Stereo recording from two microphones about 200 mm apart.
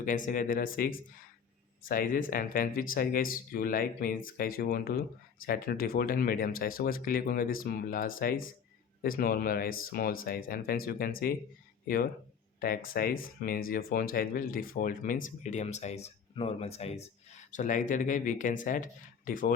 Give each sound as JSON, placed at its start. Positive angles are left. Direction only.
{"t": 0.0, "sound": "speech", "side_deg": 40}